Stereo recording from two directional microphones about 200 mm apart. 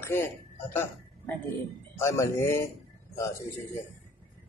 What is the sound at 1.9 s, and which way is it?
Speech, 15° left (ahead or behind).